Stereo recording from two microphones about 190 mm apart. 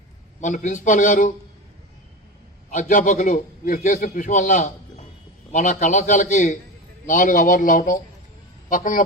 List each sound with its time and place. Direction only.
0.4 s a man's voice: 40° left (ahead or behind)
2.6 s a man's voice: 45° left (ahead or behind)